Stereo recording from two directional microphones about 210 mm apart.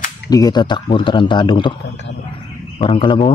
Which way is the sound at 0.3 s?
20° left (ahead or behind).